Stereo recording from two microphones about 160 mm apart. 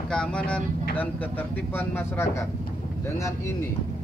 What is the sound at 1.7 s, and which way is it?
Speech, 15° left (ahead or behind).